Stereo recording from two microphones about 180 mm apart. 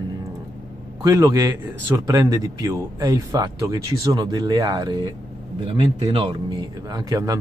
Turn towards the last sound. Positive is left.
turn(degrees=-20)  # may be behind; listen again after turning